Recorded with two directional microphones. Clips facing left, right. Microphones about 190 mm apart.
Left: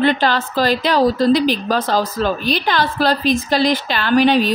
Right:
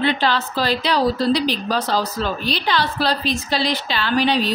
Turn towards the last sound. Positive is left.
turn(degrees=50)  # may be behind; listen again after turning